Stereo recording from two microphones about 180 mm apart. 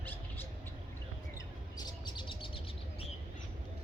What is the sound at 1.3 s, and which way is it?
Bird, 20° left (ahead or behind).